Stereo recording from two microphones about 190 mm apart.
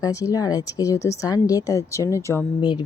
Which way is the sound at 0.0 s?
15° left (ahead or behind).